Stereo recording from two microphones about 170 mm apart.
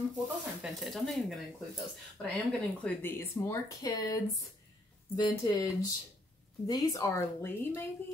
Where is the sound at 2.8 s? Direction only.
15° left (ahead or behind).